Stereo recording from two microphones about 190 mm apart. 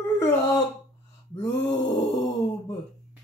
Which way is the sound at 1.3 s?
20° left (ahead or behind).